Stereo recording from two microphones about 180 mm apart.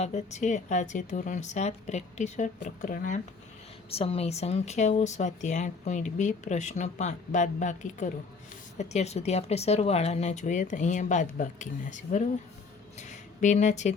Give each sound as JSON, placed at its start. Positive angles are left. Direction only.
{"t": 0.0, "sound": "speech", "side_deg": 40}
{"t": 3.9, "sound": "speech", "side_deg": 30}